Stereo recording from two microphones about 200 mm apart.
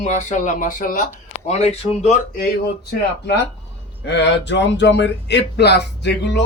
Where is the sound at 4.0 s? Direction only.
60° left (ahead or behind).